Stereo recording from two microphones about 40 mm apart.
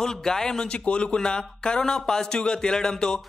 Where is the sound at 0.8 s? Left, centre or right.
Left.